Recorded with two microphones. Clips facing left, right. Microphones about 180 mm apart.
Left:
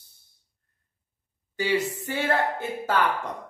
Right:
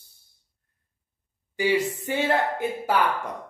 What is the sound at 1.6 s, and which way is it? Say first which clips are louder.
Speech: right 2 dB; 15° right (ahead or behind).